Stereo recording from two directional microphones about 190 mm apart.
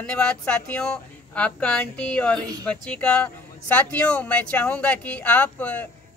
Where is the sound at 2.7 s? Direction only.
5° left (ahead or behind).